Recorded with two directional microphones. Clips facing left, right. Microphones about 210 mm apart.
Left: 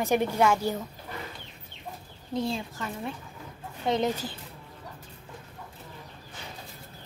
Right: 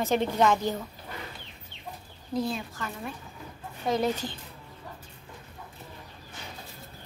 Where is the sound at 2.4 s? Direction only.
25° left (ahead or behind).